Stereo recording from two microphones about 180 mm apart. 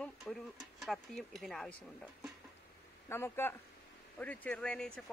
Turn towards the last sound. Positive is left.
turn(degrees=5)  # may be behind; listen again after turning